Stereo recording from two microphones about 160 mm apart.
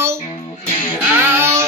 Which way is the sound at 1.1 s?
15° right (ahead or behind).